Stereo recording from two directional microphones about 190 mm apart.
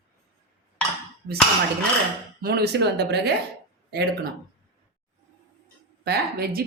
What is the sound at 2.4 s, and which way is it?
Speech, 55° right (ahead or behind).